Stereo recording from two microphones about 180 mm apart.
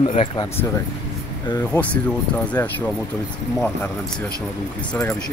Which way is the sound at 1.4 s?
20° left (ahead or behind).